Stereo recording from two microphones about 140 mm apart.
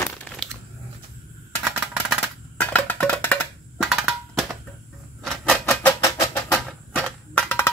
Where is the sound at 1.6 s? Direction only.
Centre (ahead or behind).